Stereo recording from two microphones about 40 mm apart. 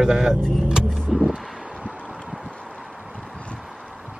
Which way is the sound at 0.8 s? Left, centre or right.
Centre.